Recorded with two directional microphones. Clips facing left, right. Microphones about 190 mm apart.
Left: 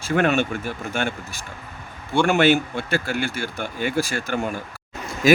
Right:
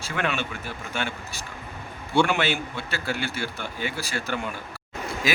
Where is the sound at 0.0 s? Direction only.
45° left (ahead or behind).